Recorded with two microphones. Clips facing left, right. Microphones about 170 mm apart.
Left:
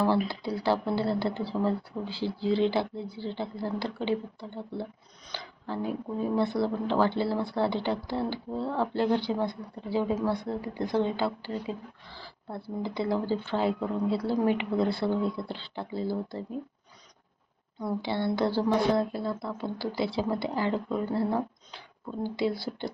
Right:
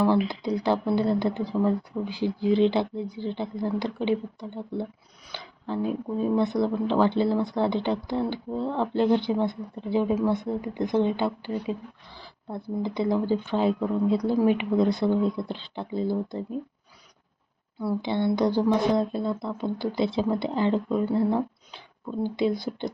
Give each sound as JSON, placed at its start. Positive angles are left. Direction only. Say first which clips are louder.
{"t": 0.3, "sound": "speech", "louder": "right 3 dB", "side_deg": -20}
{"t": 18.0, "sound": "speech", "louder": "right 4 dB", "side_deg": -20}